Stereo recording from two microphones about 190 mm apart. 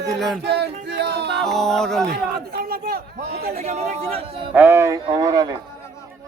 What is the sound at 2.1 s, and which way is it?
Chatter, 55° right (ahead or behind).